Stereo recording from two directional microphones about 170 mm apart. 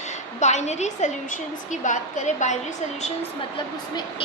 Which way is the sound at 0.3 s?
40° left (ahead or behind).